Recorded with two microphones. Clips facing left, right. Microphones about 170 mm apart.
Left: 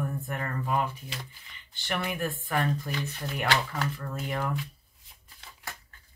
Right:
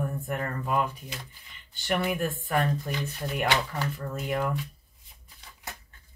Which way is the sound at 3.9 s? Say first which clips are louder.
Right 3 dB; 45° right (ahead or behind).